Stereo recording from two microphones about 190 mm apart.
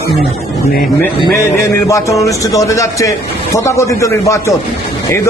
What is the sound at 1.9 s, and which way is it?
A man's voice, 15° left (ahead or behind).